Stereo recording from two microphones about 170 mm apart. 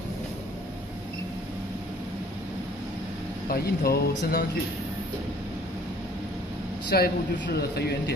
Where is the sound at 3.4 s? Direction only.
60° left (ahead or behind).